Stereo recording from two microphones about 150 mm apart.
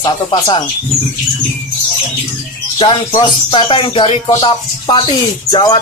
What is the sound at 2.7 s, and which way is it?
Speech, 35° left (ahead or behind).